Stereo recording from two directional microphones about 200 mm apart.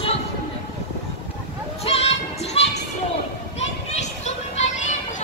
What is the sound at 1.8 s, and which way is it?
Music, 30° left (ahead or behind).